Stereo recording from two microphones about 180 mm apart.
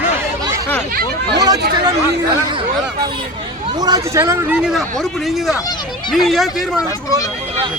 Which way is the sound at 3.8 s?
20° right (ahead or behind).